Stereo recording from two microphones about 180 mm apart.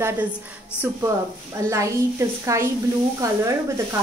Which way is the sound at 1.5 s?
15° right (ahead or behind).